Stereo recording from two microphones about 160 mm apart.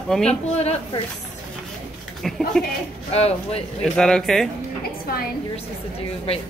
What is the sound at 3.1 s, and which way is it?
Speech, 40° left (ahead or behind).